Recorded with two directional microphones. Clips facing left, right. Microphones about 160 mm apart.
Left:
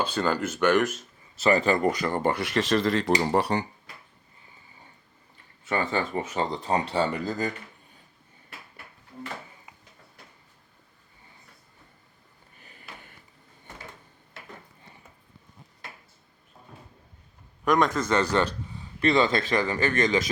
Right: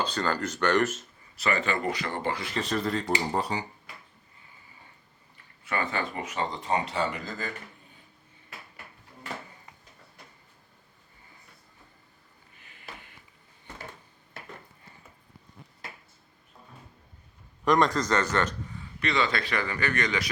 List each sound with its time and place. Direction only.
0.0 s a man's voice: 10° left (ahead or behind)
1.4 s speech: 35° left (ahead or behind)
2.3 s speech: 70° left (ahead or behind)
5.6 s speech: 30° left (ahead or behind)
12.5 s a sound: 40° left (ahead or behind)
17.7 s a man's voice: centre (ahead or behind)
19.1 s speech: 40° left (ahead or behind)